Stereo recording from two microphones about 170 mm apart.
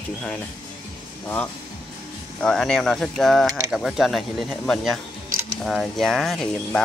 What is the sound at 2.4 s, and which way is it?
Speech, 5° left (ahead or behind).